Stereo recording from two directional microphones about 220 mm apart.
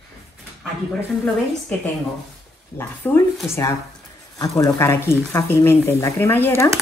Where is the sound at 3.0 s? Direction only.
10° left (ahead or behind).